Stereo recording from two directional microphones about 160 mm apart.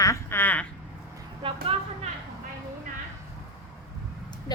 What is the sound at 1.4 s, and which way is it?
Speech, 35° right (ahead or behind).